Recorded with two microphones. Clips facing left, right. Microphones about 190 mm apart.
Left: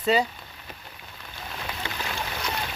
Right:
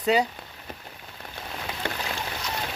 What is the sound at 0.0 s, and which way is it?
Speech, 15° right (ahead or behind).